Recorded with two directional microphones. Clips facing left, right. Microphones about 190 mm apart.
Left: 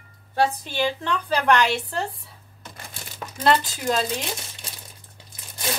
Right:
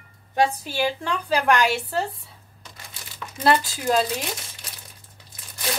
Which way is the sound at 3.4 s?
10° right (ahead or behind).